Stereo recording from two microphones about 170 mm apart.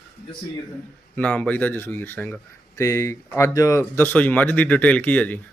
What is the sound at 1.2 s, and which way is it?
Speech, 10° left (ahead or behind).